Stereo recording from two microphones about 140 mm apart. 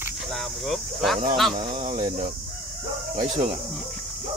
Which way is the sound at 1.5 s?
55° right (ahead or behind).